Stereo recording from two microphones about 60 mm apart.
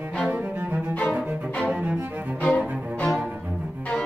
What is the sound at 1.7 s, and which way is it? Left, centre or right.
Music, centre.